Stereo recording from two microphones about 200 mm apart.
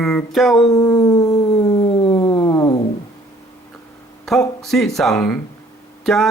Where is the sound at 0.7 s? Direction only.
15° left (ahead or behind).